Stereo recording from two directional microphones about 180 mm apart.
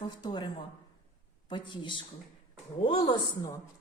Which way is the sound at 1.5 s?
25° left (ahead or behind).